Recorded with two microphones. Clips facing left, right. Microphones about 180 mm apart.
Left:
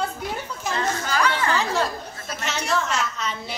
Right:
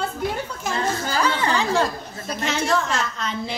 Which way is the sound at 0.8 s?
30° right (ahead or behind).